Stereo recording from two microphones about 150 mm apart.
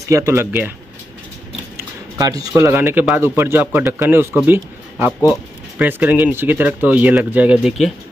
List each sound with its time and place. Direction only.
0.1 s a man's voice: 20° right (ahead or behind)
2.1 s a man's voice: 25° right (ahead or behind); by 7.9 s centre (ahead or behind)